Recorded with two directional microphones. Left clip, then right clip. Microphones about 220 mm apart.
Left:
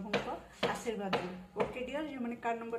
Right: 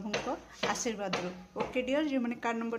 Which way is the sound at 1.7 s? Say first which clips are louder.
Right 8 dB; 50° right (ahead or behind).